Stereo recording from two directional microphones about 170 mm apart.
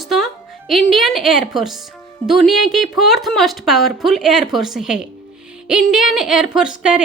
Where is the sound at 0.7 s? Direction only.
Centre (ahead or behind).